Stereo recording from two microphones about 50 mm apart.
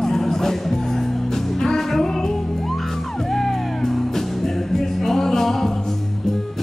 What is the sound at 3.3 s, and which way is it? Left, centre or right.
Music, centre.